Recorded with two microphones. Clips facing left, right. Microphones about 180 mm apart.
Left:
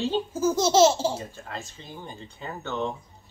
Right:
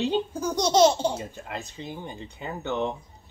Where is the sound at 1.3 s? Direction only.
15° right (ahead or behind).